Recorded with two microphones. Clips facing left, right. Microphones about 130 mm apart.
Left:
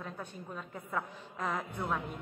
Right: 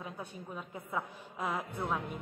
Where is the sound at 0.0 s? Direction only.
10° right (ahead or behind).